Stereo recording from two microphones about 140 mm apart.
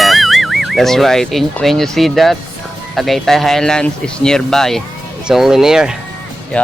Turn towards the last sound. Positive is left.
turn(degrees=-5)  # may be behind; listen again after turning